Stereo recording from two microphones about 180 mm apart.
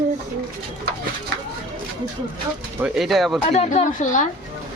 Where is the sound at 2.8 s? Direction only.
Centre (ahead or behind).